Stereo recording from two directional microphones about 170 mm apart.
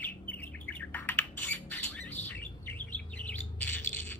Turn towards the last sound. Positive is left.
turn(degrees=10)  # may be behind; listen again after turning